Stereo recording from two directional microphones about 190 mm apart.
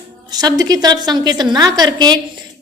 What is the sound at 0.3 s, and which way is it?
A woman's voice, 20° right (ahead or behind).